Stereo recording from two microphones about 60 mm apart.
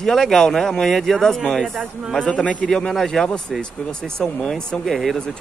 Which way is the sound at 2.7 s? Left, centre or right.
Centre.